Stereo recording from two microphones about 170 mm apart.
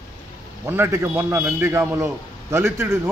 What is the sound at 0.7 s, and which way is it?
A man's voice, 15° right (ahead or behind).